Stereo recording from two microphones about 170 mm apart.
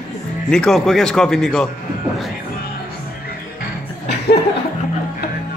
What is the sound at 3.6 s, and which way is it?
Music, 75° left (ahead or behind).